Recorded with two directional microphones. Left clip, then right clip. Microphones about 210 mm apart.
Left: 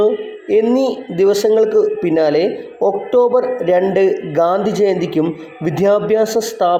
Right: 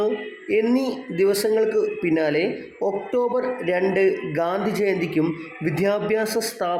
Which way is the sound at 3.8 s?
20° right (ahead or behind).